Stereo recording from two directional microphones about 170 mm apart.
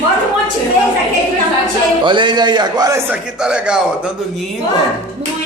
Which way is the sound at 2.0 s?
30° right (ahead or behind).